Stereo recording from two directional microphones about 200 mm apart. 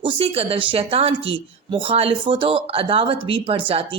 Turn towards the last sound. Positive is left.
turn(degrees=-30)  # may be behind; listen again after turning